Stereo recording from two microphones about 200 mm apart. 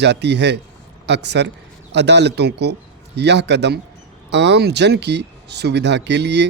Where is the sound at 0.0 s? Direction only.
60° right (ahead or behind).